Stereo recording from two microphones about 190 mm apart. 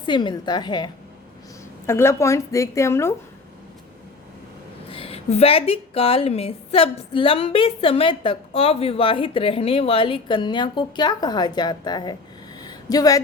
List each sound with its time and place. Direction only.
0.0 s a woman's voice: 25° left (ahead or behind)
1.9 s a woman's voice: 15° left (ahead or behind)
4.9 s a woman's voice: 30° left (ahead or behind)
12.6 s a sound: 20° left (ahead or behind)